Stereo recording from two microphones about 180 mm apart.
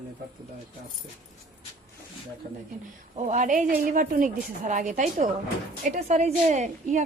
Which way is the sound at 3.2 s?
40° right (ahead or behind).